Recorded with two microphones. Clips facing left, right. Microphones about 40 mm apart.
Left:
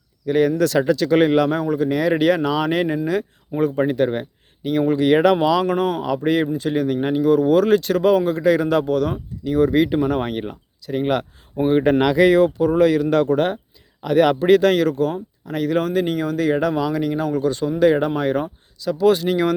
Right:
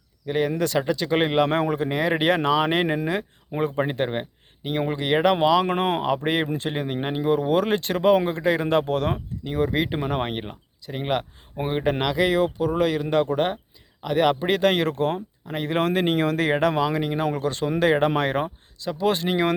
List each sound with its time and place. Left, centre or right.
0.3 s speech: centre
1.5 s speech: right; by 5.6 s centre
5.6 s speech: right
6.7 s speech: right
9.4 s speech: right
11.9 s speech: centre; by 14.8 s right
14.8 s speech: right
15.8 s speech: right
18.9 s speech: right